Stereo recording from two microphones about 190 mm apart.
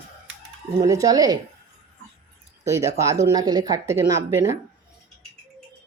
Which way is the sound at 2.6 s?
15° right (ahead or behind).